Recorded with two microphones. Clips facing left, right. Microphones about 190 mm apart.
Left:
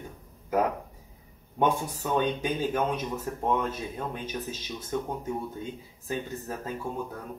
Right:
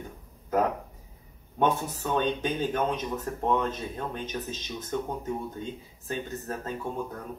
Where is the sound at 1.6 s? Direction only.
10° left (ahead or behind).